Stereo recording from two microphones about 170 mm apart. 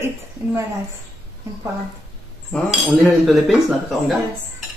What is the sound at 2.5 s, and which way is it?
Cutlery, 5° left (ahead or behind).